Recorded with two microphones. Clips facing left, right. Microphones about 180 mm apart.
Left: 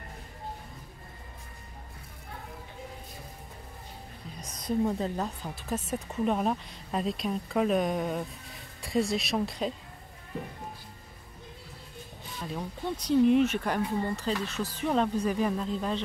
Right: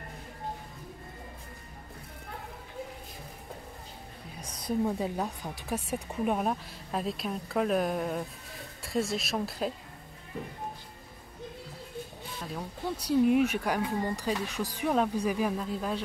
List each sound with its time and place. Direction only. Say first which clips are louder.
4.4 s a woman's voice: left 1 dB; 10° right (ahead or behind)
12.9 s speech: left 2 dB; 10° right (ahead or behind)